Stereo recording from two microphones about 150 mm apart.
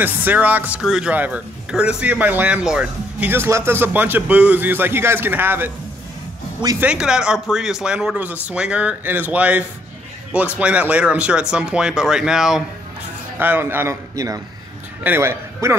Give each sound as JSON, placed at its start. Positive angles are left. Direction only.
{"t": 0.0, "sound": "speech", "side_deg": -10}
{"t": 6.8, "sound": "speech", "side_deg": -5}
{"t": 13.4, "sound": "a man's voice", "side_deg": -15}